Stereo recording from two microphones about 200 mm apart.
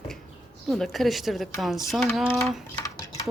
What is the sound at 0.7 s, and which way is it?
Speech, centre (ahead or behind).